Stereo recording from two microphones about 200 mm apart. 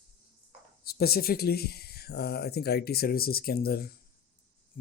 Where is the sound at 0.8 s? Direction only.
50° left (ahead or behind).